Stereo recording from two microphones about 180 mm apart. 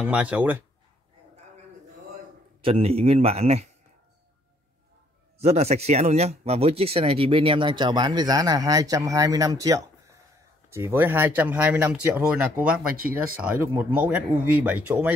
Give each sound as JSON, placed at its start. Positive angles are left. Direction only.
{"t": 0.0, "sound": "speech", "side_deg": -5}
{"t": 2.6, "sound": "speech", "side_deg": -30}
{"t": 5.4, "sound": "speech", "side_deg": -35}